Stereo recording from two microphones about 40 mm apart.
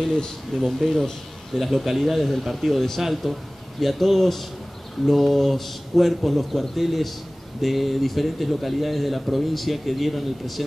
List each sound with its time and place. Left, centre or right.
0.0 s speech: centre
0.6 s speech: centre